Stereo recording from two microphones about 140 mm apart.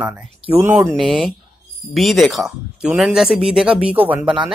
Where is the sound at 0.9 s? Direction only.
Centre (ahead or behind).